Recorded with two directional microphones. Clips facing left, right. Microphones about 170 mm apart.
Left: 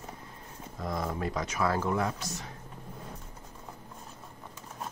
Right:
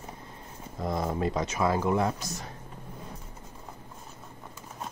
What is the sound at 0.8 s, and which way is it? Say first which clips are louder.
Speech: right 4 dB; 25° right (ahead or behind).